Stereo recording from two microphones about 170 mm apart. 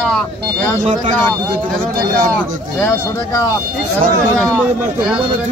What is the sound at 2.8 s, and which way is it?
Speech, 15° left (ahead or behind).